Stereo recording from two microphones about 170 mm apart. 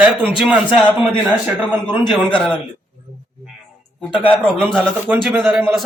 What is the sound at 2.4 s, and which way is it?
Speech, 30° left (ahead or behind).